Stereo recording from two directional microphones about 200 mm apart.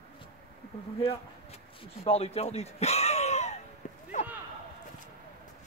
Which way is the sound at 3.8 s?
40° left (ahead or behind).